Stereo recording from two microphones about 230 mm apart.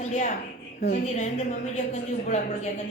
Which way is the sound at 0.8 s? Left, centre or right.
Left.